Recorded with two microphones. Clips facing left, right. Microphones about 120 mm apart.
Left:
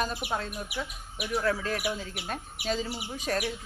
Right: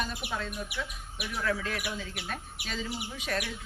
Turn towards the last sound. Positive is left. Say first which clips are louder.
# left 3 dB
turn(degrees=35)  # may be behind; listen again after turning